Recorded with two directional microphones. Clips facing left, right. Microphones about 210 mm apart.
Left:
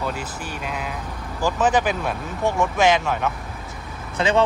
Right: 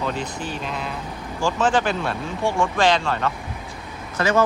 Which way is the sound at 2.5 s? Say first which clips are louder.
Left 1 dB; 5° left (ahead or behind).